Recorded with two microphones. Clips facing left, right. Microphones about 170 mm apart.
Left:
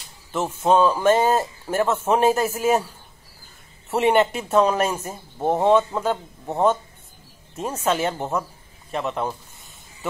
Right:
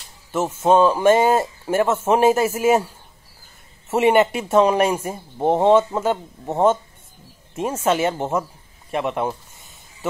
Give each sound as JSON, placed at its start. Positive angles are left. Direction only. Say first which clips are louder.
{"t": 0.6, "sound": "a man's voice", "louder": "right 2 dB", "side_deg": -10}
{"t": 3.9, "sound": "a man's voice", "louder": "right 2 dB", "side_deg": -5}
{"t": 6.5, "sound": "speech", "louder": "right 2 dB", "side_deg": -20}
{"t": 7.5, "sound": "a man's voice", "louder": "right 3 dB", "side_deg": -10}